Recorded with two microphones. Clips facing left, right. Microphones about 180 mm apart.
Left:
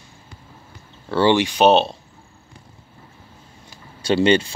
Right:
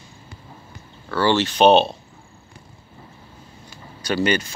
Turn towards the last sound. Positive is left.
turn(degrees=25)  # may be behind; listen again after turning